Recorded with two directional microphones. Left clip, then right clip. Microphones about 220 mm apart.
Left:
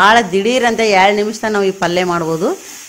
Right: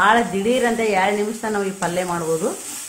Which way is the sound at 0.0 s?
40° left (ahead or behind).